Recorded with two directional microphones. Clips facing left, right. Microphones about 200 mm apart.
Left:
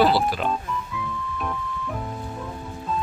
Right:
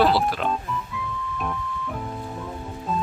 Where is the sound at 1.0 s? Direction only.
Centre (ahead or behind).